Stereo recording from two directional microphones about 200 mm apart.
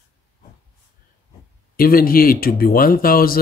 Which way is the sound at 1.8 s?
45° left (ahead or behind).